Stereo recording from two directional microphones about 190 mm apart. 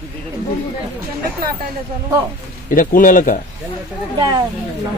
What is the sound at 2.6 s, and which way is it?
Speech, 45° left (ahead or behind).